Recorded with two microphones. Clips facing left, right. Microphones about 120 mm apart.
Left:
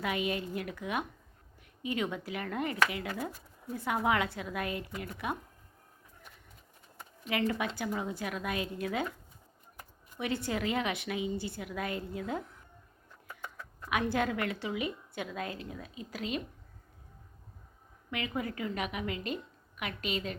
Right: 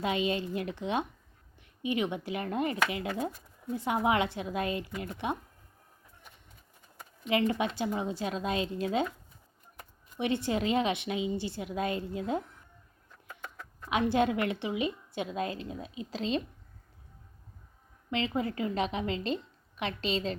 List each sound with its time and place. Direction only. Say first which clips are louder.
0.0 s a woman's voice: right 3 dB; 25° right (ahead or behind)
7.3 s a woman's voice: right 4 dB; 20° right (ahead or behind)
10.2 s a woman's voice: right 4 dB; 25° right (ahead or behind)
13.9 s a woman's voice: right 4 dB; 25° right (ahead or behind)
18.1 s a woman's voice: right 4 dB; 25° right (ahead or behind)